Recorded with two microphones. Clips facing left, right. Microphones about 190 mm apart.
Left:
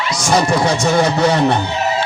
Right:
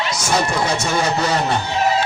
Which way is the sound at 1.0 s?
65° left (ahead or behind).